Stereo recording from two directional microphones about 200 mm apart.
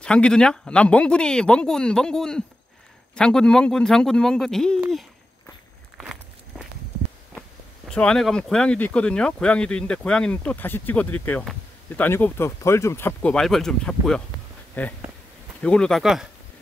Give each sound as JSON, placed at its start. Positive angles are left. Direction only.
{"t": 0.0, "sound": "speech", "side_deg": 5}
{"t": 7.9, "sound": "speech", "side_deg": 5}